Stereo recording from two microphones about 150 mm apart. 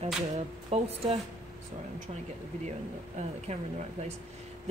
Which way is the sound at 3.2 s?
50° right (ahead or behind).